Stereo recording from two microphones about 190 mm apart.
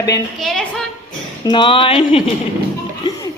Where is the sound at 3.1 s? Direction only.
20° left (ahead or behind).